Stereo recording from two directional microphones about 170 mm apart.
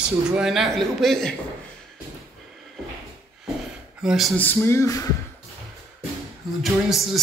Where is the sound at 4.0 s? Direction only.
5° right (ahead or behind).